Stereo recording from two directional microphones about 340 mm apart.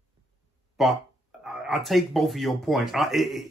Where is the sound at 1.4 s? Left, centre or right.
Centre.